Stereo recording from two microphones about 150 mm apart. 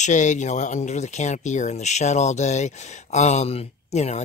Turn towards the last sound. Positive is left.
turn(degrees=50)  # may be behind; listen again after turning